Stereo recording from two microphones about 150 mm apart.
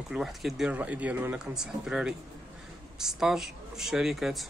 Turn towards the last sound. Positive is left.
turn(degrees=0)  # may be behind; listen again after turning